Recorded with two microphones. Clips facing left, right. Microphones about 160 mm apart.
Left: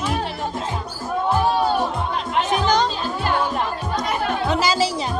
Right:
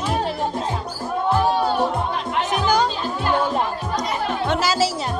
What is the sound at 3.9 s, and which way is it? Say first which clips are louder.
Music: left 1 dB; centre (ahead or behind).